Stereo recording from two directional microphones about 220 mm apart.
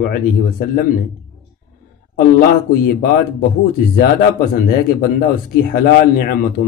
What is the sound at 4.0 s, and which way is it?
Speech, 40° left (ahead or behind).